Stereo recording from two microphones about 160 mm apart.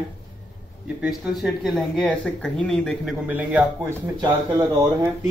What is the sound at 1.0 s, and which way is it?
Speech, 5° right (ahead or behind).